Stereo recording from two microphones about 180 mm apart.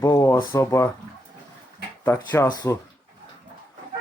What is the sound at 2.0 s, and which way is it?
Speech, 15° left (ahead or behind).